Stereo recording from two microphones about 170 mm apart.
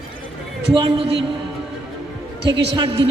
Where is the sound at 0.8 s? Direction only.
30° right (ahead or behind).